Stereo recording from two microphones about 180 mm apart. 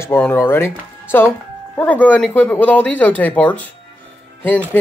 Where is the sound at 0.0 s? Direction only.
10° left (ahead or behind).